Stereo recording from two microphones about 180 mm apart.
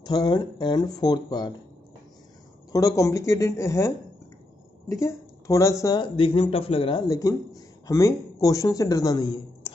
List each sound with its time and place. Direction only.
0.0 s a man's voice: 25° left (ahead or behind)
2.7 s a woman's voice: 20° left (ahead or behind)
6.1 s a man's voice: 30° left (ahead or behind)